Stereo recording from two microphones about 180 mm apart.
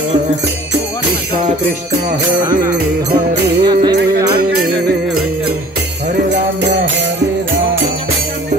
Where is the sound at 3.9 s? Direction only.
60° right (ahead or behind).